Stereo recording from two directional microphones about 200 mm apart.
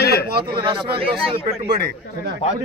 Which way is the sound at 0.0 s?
55° left (ahead or behind).